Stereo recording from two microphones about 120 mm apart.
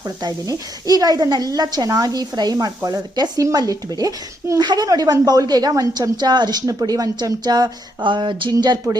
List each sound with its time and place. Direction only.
0.2 s speech: 30° right (ahead or behind)